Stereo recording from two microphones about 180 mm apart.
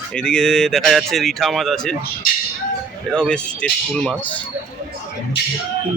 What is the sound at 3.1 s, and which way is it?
Speech, 5° left (ahead or behind).